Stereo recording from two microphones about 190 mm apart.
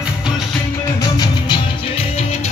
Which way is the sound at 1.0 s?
20° left (ahead or behind).